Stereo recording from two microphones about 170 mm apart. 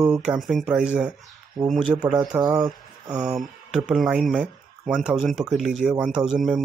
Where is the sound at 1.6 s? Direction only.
20° right (ahead or behind).